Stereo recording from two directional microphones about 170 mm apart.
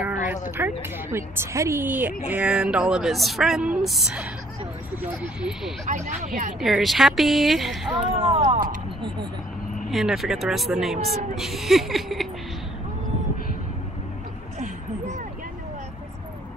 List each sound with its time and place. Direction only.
0.3 s a woman's voice: 10° right (ahead or behind)
5.9 s speech: 45° right (ahead or behind)
6.6 s a woman's voice: centre (ahead or behind)
8.2 s speech: 35° right (ahead or behind)
9.8 s a woman's voice: centre (ahead or behind)